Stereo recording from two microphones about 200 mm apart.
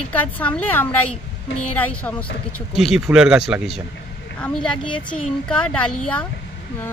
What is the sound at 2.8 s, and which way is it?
Speech, 5° right (ahead or behind).